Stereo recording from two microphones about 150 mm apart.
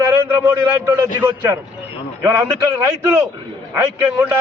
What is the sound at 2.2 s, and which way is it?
A man's voice, 20° right (ahead or behind).